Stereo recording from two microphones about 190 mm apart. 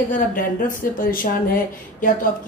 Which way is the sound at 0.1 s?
45° left (ahead or behind).